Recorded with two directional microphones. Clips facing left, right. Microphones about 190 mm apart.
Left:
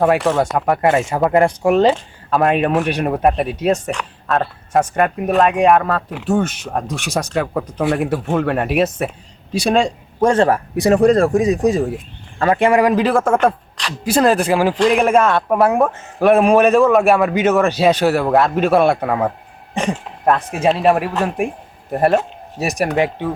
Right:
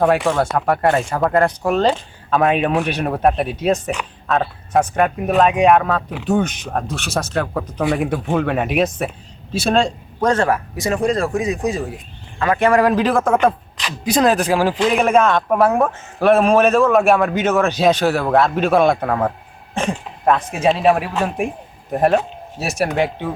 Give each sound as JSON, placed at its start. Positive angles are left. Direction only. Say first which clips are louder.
{"t": 0.0, "sound": "a man's voice", "louder": "left 1 dB", "side_deg": 5}
{"t": 2.3, "sound": "speech", "louder": "left 1 dB", "side_deg": 0}
{"t": 3.5, "sound": "a man's voice", "louder": "left 1 dB", "side_deg": 10}
{"t": 3.8, "sound": "speech", "louder": "even", "side_deg": -5}
{"t": 10.3, "sound": "speech", "louder": "left 4 dB", "side_deg": 30}
{"t": 11.0, "sound": "a man's voice", "louder": "left 5 dB", "side_deg": 50}
{"t": 12.5, "sound": "a man's voice", "louder": "even", "side_deg": 20}
{"t": 12.8, "sound": "a man's voice", "louder": "left 1 dB", "side_deg": 5}
{"t": 16.8, "sound": "a man's voice", "louder": "left 1 dB", "side_deg": 0}
{"t": 22.5, "sound": "a man's voice", "louder": "left 1 dB", "side_deg": 15}